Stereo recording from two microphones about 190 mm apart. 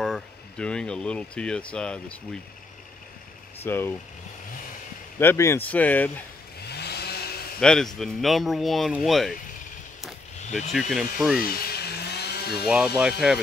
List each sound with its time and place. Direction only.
0.0 s speech: 5° left (ahead or behind)
3.6 s speech: 10° left (ahead or behind)
5.2 s speech: 15° left (ahead or behind)
6.7 s vehicle: 60° left (ahead or behind)
7.6 s speech: 5° left (ahead or behind)
10.7 s speech: centre (ahead or behind)
11.4 s a sound: 55° left (ahead or behind)
12.6 s speech: 5° right (ahead or behind)